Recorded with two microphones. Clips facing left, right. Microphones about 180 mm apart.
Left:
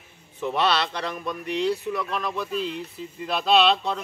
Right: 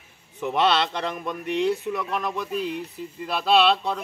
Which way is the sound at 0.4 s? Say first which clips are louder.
Right 2 dB; 15° right (ahead or behind).